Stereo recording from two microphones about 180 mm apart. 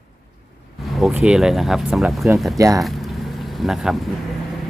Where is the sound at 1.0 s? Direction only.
5° right (ahead or behind).